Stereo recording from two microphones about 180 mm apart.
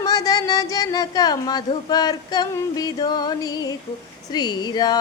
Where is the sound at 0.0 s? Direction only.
20° left (ahead or behind).